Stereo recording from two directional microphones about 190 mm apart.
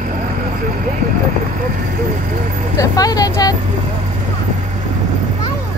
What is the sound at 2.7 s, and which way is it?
Vehicle, 20° left (ahead or behind).